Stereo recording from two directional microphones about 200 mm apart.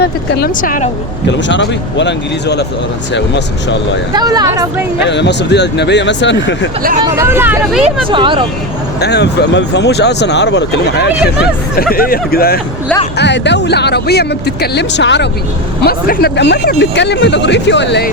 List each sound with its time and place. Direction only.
0.0 s speech: 50° left (ahead or behind)
1.5 s speech: 65° left (ahead or behind)
4.1 s speech: 20° right (ahead or behind)
4.9 s speech: 60° left (ahead or behind)
7.0 s speech: 10° right (ahead or behind)
8.1 s speech: 25° right (ahead or behind)
9.0 s speech: 55° left (ahead or behind)
13.1 s speech: 60° left (ahead or behind)
15.8 s speech: 50° left (ahead or behind)